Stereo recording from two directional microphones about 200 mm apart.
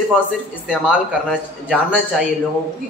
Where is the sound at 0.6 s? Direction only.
5° right (ahead or behind).